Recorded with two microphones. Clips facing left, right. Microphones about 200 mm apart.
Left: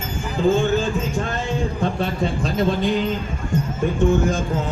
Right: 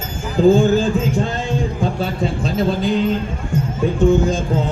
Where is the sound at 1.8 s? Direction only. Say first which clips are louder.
Right 2 dB; centre (ahead or behind).